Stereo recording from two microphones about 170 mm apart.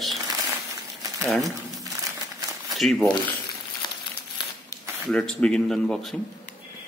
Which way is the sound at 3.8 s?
25° left (ahead or behind).